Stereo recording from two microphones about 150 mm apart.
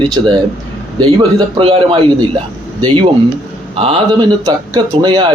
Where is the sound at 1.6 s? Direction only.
35° right (ahead or behind).